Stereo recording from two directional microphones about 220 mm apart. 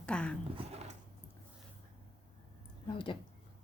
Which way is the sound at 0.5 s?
30° right (ahead or behind).